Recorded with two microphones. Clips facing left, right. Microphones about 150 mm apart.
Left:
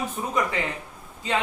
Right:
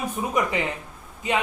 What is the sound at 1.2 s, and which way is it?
Speech, 20° right (ahead or behind).